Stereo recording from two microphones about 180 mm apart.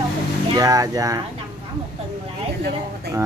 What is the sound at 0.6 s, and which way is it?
Speech, 20° right (ahead or behind).